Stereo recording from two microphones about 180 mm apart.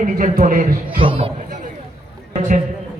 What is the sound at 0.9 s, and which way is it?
Speech, 30° right (ahead or behind).